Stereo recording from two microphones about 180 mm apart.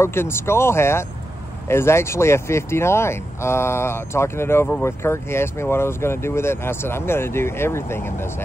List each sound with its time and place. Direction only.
0.0 s speech: 15° left (ahead or behind)